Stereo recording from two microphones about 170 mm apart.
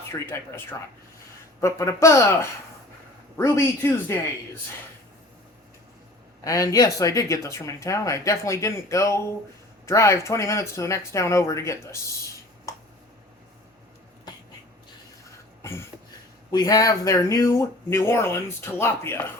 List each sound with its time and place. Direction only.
0.0 s speech: 15° left (ahead or behind)
1.6 s speech: 20° left (ahead or behind)
6.4 s speech: 20° left (ahead or behind)
15.6 s a sound: 15° left (ahead or behind)
16.5 s speech: 20° left (ahead or behind)